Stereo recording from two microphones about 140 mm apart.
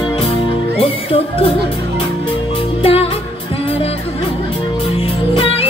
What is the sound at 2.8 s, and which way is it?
Music, 45° left (ahead or behind).